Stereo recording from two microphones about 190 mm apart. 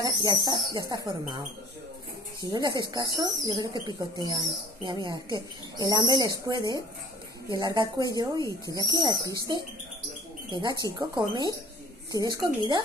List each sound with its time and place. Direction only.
0.0 s speech: 20° right (ahead or behind)
2.4 s speech: 20° right (ahead or behind)